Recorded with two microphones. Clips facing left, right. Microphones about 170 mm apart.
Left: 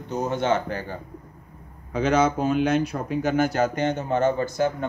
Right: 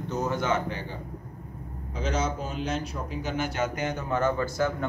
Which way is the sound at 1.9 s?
65° left (ahead or behind).